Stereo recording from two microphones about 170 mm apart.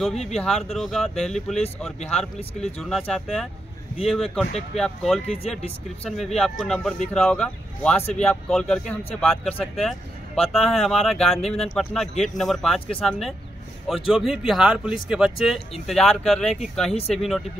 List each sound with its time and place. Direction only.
0.1 s speech: 40° left (ahead or behind)
0.4 s speech: centre (ahead or behind)
2.8 s speech: centre (ahead or behind)